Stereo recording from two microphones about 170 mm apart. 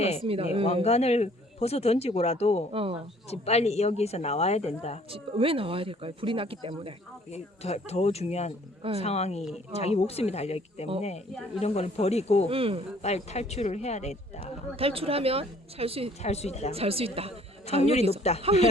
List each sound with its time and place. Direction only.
0.2 s speech: 35° right (ahead or behind)
0.6 s a man's voice: 40° left (ahead or behind)
2.7 s speech: 35° right (ahead or behind)
3.2 s a man's voice: 40° left (ahead or behind)
5.1 s speech: 35° right (ahead or behind)
7.3 s a man's voice: 40° left (ahead or behind)
12.5 s speech: 35° right (ahead or behind)
13.0 s a man's voice: 40° left (ahead or behind)
14.8 s speech: 35° right (ahead or behind)
16.2 s a man's voice: 40° left (ahead or behind)
16.7 s speech: 35° right (ahead or behind)
18.2 s a man's voice: 40° left (ahead or behind)